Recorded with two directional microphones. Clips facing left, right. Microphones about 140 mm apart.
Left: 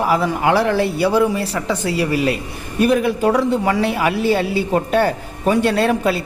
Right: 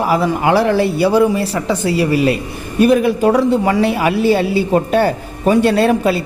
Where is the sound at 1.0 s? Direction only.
30° right (ahead or behind).